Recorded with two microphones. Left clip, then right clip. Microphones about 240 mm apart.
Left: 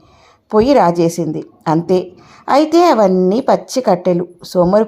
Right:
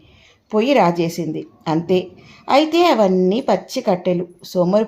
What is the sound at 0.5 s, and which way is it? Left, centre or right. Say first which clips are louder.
A woman's voice: left 4 dB; left.